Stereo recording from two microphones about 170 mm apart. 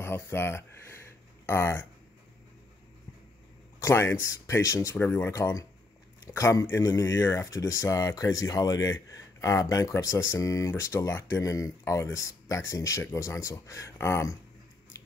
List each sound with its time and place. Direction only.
0.0 s speech: 15° left (ahead or behind)
3.8 s speech: 15° left (ahead or behind)